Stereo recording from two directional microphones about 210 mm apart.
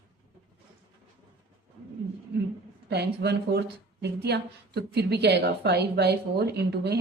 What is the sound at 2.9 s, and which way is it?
A woman's voice, 50° right (ahead or behind).